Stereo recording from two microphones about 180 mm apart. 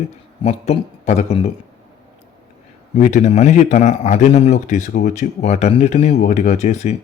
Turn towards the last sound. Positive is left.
turn(degrees=40)  # may be behind; listen again after turning